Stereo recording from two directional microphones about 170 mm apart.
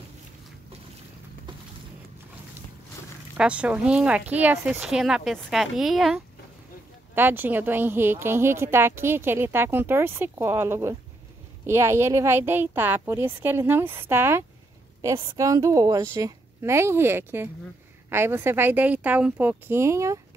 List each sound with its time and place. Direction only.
3.3 s speech: 5° right (ahead or behind)
7.2 s speech: 10° right (ahead or behind)